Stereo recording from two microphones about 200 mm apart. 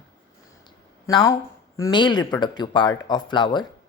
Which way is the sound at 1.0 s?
15° left (ahead or behind).